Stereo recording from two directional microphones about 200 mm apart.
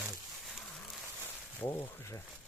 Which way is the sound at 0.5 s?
Centre (ahead or behind).